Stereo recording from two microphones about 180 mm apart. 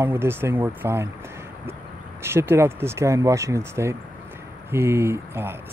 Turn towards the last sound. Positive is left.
turn(degrees=-15)  # may be behind; listen again after turning